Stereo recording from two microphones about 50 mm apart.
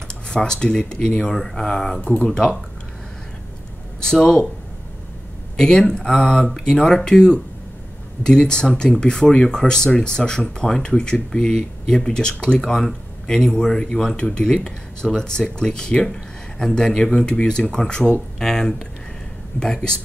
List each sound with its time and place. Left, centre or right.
0.1 s speech: centre
2.0 s speech: left
4.0 s speech: centre
5.6 s speech: centre